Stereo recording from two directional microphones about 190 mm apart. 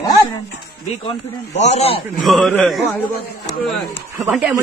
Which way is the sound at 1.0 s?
35° left (ahead or behind).